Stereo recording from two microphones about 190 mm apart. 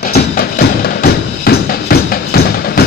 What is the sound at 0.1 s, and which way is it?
Music, 55° left (ahead or behind).